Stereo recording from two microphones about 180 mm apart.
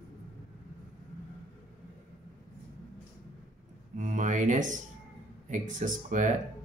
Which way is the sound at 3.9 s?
45° right (ahead or behind).